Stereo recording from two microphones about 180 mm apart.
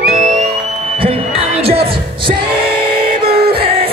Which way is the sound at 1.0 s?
30° right (ahead or behind).